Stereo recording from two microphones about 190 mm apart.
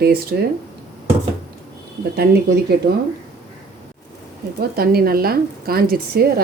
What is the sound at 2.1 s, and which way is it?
Speech, 55° right (ahead or behind).